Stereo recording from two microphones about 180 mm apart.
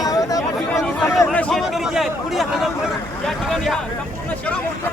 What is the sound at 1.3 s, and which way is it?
Speech, 5° left (ahead or behind).